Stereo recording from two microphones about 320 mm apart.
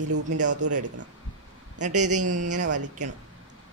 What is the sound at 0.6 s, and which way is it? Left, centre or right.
Speech, right.